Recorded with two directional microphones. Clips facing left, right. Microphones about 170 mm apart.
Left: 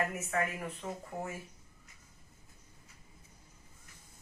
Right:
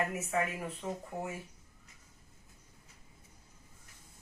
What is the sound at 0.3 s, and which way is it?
Speech, 5° right (ahead or behind).